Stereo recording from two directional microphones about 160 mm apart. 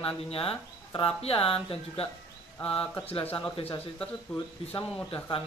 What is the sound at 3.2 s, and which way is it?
Speech, 10° left (ahead or behind).